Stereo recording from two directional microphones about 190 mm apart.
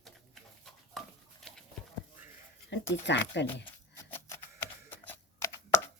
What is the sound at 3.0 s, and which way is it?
Speech, 65° left (ahead or behind).